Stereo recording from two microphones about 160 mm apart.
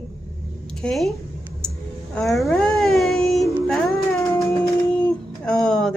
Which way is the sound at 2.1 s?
Centre (ahead or behind).